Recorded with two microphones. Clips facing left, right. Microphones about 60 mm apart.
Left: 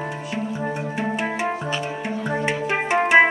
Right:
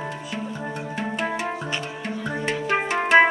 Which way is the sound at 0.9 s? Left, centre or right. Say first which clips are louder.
Even; centre.